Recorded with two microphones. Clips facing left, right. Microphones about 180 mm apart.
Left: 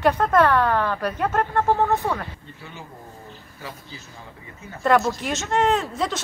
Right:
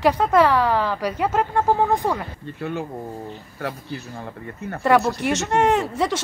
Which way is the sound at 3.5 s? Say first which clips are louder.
Right 9 dB; 70° right (ahead or behind).